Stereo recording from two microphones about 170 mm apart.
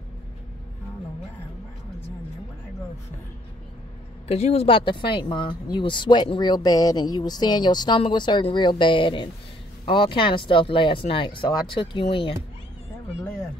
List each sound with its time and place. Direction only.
4.3 s speech: 40° left (ahead or behind)